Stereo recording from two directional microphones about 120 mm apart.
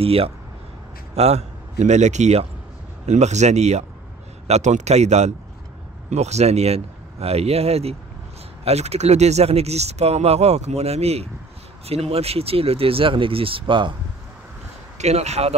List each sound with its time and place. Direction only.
0.0 s speech: 55° right (ahead or behind)
1.1 s a man's voice: 65° right (ahead or behind); by 13.9 s 45° right (ahead or behind)
15.0 s speech: 65° right (ahead or behind)